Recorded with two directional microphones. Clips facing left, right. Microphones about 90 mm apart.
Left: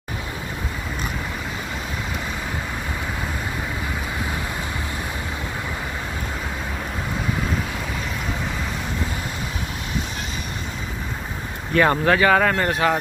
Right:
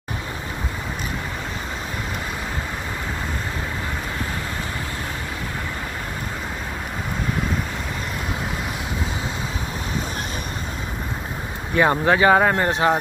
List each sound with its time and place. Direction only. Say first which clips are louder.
11.7 s speech: even; 15° right (ahead or behind)